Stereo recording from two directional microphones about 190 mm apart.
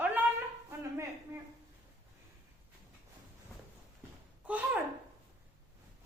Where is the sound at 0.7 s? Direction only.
15° right (ahead or behind).